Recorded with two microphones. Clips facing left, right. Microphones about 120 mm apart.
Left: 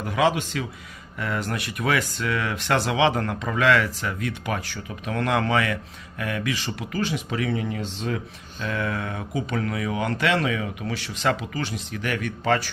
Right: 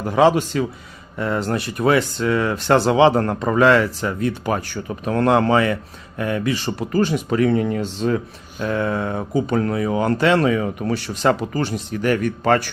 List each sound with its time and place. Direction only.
0.0 s speech: 35° right (ahead or behind)